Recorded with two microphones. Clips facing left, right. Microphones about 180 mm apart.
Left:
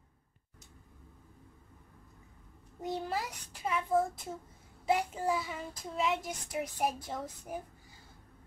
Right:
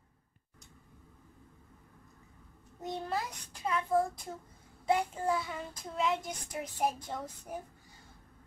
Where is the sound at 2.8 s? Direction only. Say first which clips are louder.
Left 1 dB; 5° left (ahead or behind).